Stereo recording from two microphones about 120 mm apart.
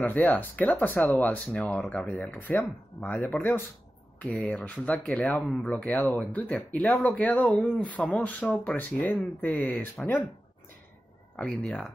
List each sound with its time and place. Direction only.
0.0 s speech: 15° left (ahead or behind)
11.3 s speech: 10° left (ahead or behind)